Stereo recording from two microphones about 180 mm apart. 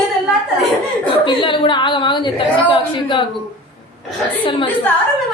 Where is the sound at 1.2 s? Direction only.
25° left (ahead or behind).